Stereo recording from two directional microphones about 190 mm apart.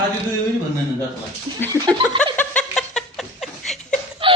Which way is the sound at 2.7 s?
Centre (ahead or behind).